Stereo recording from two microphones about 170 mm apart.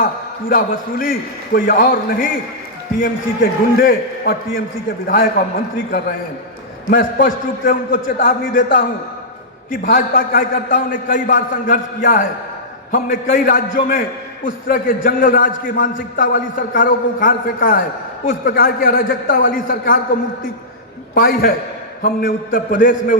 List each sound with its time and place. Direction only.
0.0 s a man's voice: 55° left (ahead or behind)
21.2 s a man's voice: 60° left (ahead or behind)